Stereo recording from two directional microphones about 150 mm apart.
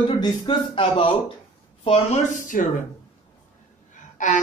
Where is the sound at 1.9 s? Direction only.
50° left (ahead or behind).